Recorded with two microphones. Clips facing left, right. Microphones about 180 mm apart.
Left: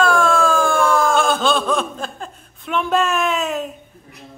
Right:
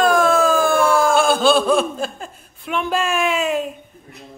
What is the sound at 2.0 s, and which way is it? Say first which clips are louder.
Speech: right 3 dB; 5° right (ahead or behind).